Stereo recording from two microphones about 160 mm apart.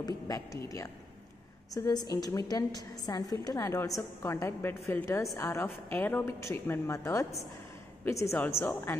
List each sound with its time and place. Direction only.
0.0 s a woman's voice: 25° left (ahead or behind)